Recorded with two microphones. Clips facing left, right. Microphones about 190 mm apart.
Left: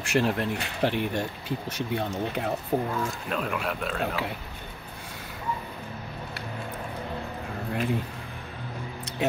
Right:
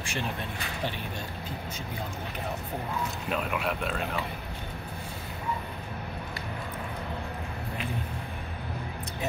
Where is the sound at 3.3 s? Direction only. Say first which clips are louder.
Right 3 dB; centre (ahead or behind).